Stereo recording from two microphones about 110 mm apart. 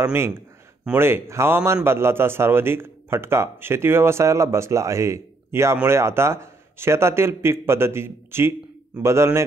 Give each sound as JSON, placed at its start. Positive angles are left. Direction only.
{"t": 0.0, "sound": "a man's voice", "side_deg": -20}